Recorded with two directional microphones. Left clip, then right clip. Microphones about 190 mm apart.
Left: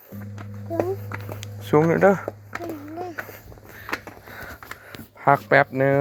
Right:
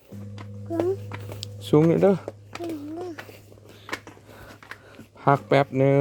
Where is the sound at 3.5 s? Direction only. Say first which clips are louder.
Left 4 dB; 20° left (ahead or behind).